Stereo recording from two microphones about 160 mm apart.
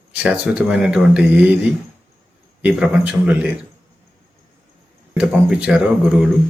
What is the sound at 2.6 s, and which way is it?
Speech, 5° right (ahead or behind).